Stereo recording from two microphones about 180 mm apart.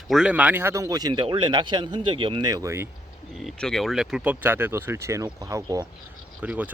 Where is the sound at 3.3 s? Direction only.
Centre (ahead or behind); by 5.9 s 20° right (ahead or behind).